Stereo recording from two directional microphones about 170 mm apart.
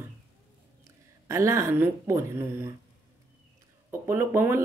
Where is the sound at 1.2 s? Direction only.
15° right (ahead or behind).